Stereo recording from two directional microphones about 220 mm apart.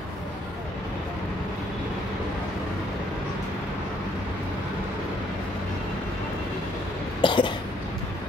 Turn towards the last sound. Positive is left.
turn(degrees=20)  # may be behind; listen again after turning